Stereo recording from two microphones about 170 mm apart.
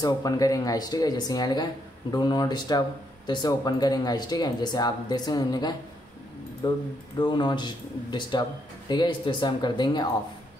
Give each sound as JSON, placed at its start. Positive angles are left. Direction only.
{"t": 0.0, "sound": "speech", "side_deg": 20}